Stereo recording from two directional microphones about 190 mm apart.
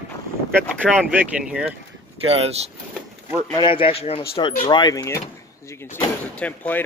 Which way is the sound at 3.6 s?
30° left (ahead or behind).